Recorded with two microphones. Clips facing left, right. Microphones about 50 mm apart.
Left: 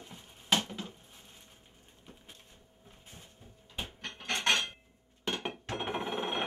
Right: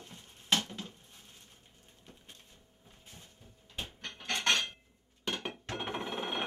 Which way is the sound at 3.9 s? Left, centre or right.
Centre.